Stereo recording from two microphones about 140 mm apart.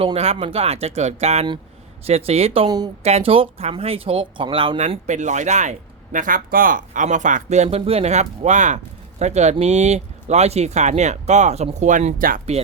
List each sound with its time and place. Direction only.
0.0 s speech: 45° right (ahead or behind)
2.6 s speech: 30° right (ahead or behind)
3.0 s speech: 50° right (ahead or behind); by 12.4 s 75° right (ahead or behind)